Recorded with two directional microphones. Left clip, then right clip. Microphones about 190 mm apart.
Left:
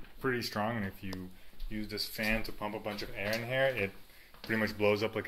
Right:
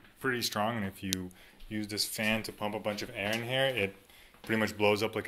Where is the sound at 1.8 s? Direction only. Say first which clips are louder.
Right 3 dB; 35° right (ahead or behind).